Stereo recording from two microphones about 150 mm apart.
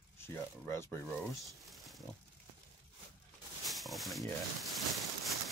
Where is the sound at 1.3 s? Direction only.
Centre (ahead or behind).